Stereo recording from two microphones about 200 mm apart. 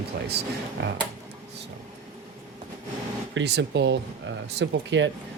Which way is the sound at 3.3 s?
60° right (ahead or behind).